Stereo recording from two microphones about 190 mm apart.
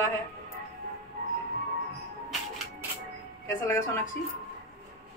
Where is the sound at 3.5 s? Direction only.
15° left (ahead or behind).